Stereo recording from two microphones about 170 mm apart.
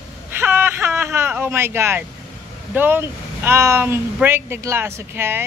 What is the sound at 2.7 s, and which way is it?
Speech, 10° right (ahead or behind).